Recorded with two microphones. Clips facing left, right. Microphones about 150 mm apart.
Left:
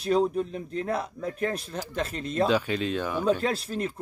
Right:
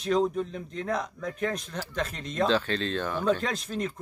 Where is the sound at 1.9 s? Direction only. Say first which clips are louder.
Left 3 dB; centre (ahead or behind).